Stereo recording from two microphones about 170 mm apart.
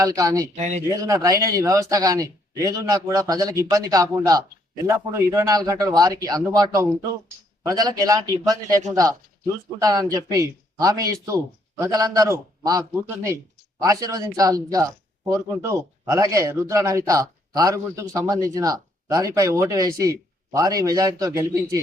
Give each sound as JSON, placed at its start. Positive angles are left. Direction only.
{"t": 0.0, "sound": "a man's voice", "side_deg": -20}
{"t": 0.5, "sound": "speech", "side_deg": -45}
{"t": 0.9, "sound": "a man's voice", "side_deg": -20}